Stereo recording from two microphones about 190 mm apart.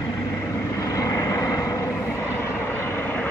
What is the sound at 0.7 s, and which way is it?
Vehicle, 15° left (ahead or behind).